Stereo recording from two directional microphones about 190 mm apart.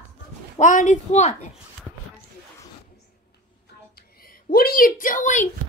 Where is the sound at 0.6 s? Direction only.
40° left (ahead or behind).